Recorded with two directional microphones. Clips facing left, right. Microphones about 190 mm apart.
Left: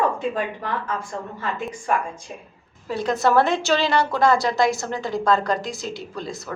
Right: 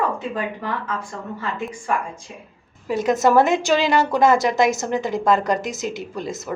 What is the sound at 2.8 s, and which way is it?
A woman's voice, 15° right (ahead or behind).